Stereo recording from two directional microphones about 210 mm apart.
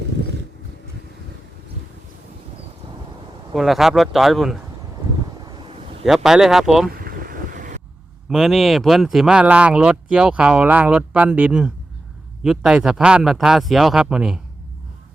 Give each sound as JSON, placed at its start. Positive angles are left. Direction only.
{"t": 3.5, "sound": "speech", "side_deg": 0}
{"t": 5.5, "sound": "a sound", "side_deg": -20}
{"t": 6.1, "sound": "speech", "side_deg": 0}
{"t": 7.0, "sound": "vehicle", "side_deg": -45}
{"t": 8.3, "sound": "speech", "side_deg": 0}